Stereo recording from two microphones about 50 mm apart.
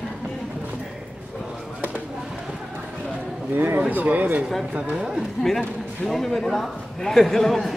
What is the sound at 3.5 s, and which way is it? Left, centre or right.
Speech, right.